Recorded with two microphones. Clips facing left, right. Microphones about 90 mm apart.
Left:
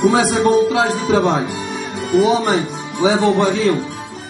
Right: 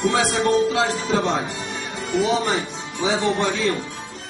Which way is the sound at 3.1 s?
50° left (ahead or behind).